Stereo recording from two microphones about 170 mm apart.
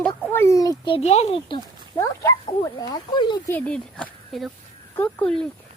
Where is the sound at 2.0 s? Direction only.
20° left (ahead or behind).